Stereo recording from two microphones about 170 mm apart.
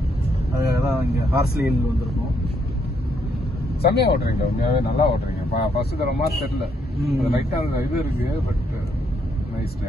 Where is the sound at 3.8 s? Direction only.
65° left (ahead or behind).